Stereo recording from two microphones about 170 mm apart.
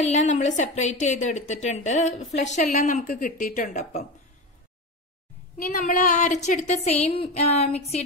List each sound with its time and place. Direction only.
0.0 s a woman's voice: 45° left (ahead or behind)
5.8 s a woman's voice: 45° left (ahead or behind)